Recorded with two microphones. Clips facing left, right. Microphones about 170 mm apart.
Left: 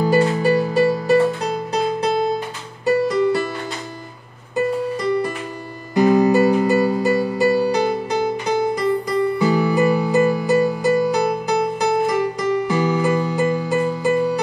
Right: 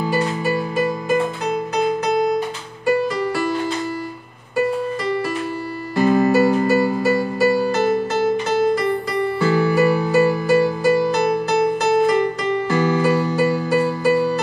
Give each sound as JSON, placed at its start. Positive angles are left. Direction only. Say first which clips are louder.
{"t": 0.0, "sound": "music", "louder": "left 5 dB", "side_deg": 40}
{"t": 5.9, "sound": "music", "louder": "left 1 dB", "side_deg": 20}
{"t": 9.4, "sound": "music", "louder": "right 3 dB", "side_deg": 15}
{"t": 12.6, "sound": "music", "louder": "right 5 dB", "side_deg": 15}